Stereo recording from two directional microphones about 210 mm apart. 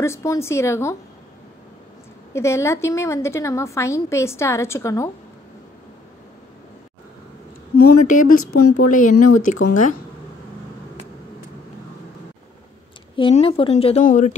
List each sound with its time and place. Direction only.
0.0 s a woman's voice: 15° left (ahead or behind)
2.3 s a woman's voice: 15° left (ahead or behind)
7.7 s speech: 40° left (ahead or behind)
8.5 s speech: 90° left
8.8 s speech: 40° left (ahead or behind)
13.1 s a woman's voice: 25° left (ahead or behind)